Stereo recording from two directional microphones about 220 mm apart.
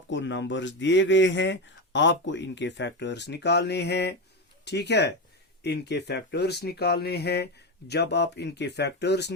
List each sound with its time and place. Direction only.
0.1 s speech: 55° left (ahead or behind)